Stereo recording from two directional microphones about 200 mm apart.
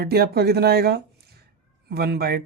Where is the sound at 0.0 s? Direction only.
50° right (ahead or behind).